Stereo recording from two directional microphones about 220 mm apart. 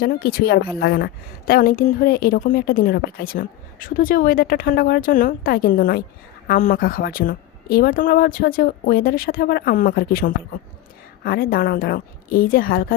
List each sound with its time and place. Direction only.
0.0 s a woman's voice: 45° left (ahead or behind)